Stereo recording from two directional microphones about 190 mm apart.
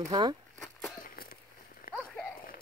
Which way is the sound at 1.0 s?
50° left (ahead or behind).